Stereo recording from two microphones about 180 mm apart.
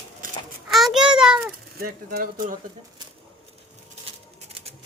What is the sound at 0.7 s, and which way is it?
Child singing, centre (ahead or behind).